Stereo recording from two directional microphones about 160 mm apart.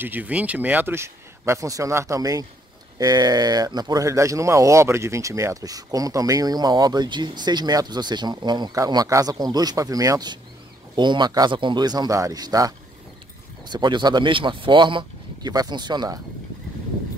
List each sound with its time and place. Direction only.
0.0 s speech: 10° right (ahead or behind); by 16.2 s 25° right (ahead or behind)